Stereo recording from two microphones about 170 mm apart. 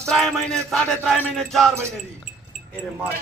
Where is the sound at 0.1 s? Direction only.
Centre (ahead or behind).